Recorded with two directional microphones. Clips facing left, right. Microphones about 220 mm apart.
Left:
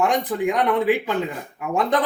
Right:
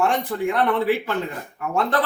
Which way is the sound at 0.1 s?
15° left (ahead or behind).